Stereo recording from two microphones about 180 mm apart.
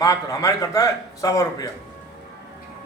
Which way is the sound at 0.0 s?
20° left (ahead or behind).